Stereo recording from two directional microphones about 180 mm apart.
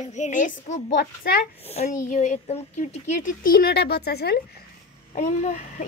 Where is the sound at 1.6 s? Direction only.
35° left (ahead or behind); by 4.4 s 65° left (ahead or behind).